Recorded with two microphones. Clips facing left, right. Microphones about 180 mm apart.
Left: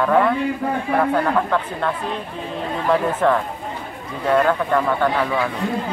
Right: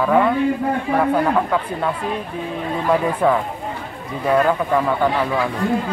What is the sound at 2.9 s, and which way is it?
Speech, 5° right (ahead or behind).